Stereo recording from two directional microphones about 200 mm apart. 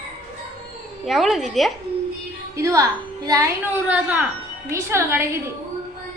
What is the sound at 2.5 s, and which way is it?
A woman's voice, 15° right (ahead or behind).